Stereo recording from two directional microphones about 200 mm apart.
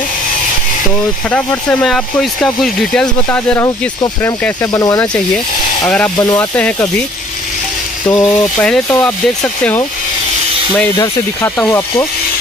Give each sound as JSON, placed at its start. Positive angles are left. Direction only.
{"t": 1.3, "sound": "speech", "side_deg": 5}
{"t": 6.1, "sound": "speech", "side_deg": 20}
{"t": 6.5, "sound": "speech", "side_deg": 5}
{"t": 8.1, "sound": "speech", "side_deg": 15}